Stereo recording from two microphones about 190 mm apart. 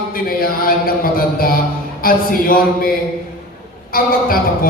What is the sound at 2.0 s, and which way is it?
Speech, 50° left (ahead or behind).